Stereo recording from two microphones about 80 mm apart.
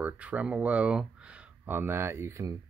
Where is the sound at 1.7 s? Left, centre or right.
Right.